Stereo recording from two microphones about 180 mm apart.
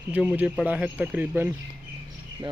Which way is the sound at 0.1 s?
5° right (ahead or behind).